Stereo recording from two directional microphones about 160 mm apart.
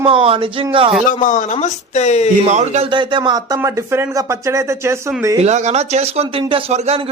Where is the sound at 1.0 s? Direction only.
50° left (ahead or behind).